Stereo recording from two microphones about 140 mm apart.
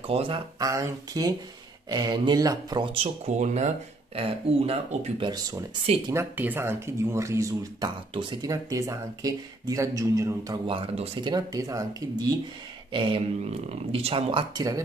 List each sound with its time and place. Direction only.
0.0 s speech: 40° right (ahead or behind)
0.6 s speech: 25° right (ahead or behind)
3.3 s speech: 55° right (ahead or behind)
5.3 s speech: 25° right (ahead or behind)
6.1 s speech: 15° right (ahead or behind)
8.1 s speech: 35° right (ahead or behind)
10.7 s speech: 40° right (ahead or behind)
12.9 s speech: 40° right (ahead or behind)
14.5 s speech: 25° right (ahead or behind)